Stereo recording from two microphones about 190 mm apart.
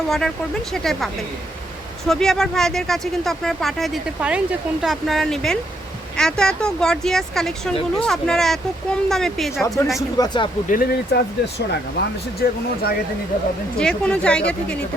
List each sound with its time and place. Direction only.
0.1 s speech: centre (ahead or behind)
9.6 s speech: 15° left (ahead or behind)
10.7 s speech: 55° left (ahead or behind)
13.7 s speech: 5° left (ahead or behind)